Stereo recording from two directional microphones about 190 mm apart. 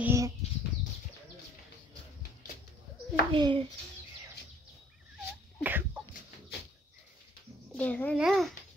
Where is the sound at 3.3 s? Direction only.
25° right (ahead or behind).